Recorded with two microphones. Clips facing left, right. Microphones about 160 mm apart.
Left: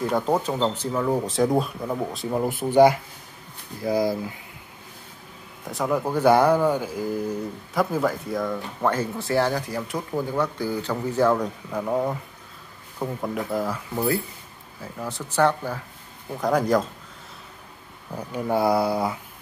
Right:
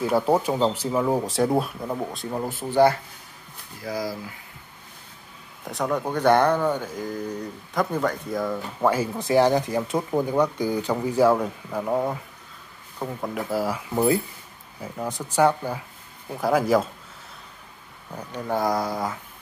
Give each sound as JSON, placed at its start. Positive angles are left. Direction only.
{"t": 0.0, "sound": "speech", "side_deg": -10}
{"t": 5.7, "sound": "speech", "side_deg": 5}
{"t": 13.9, "sound": "speech", "side_deg": -20}
{"t": 18.1, "sound": "speech", "side_deg": 10}